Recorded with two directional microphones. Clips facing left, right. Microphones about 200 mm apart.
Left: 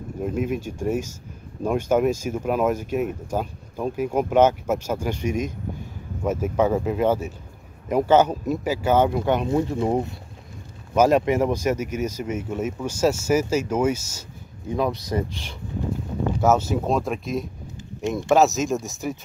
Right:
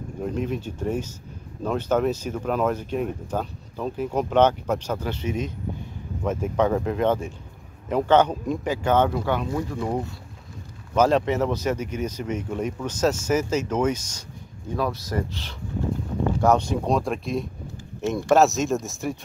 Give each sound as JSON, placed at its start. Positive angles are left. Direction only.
{"t": 0.2, "sound": "speech", "side_deg": 10}
{"t": 9.2, "sound": "speech", "side_deg": 20}
{"t": 11.0, "sound": "speech", "side_deg": 10}
{"t": 14.8, "sound": "speech", "side_deg": 20}